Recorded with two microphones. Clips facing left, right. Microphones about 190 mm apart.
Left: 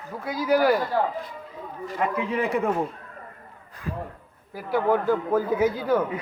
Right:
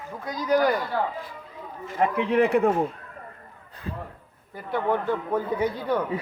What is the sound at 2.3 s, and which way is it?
Speech, 60° right (ahead or behind).